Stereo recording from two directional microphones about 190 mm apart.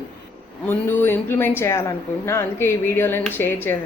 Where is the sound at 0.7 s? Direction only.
10° left (ahead or behind).